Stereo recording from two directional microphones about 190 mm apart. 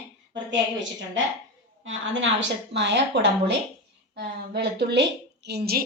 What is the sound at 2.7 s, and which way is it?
A woman's voice, 65° right (ahead or behind).